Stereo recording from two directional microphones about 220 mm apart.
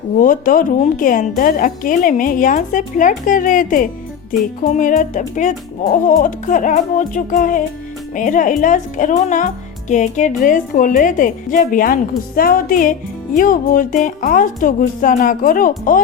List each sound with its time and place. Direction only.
0.2 s speech: 40° left (ahead or behind)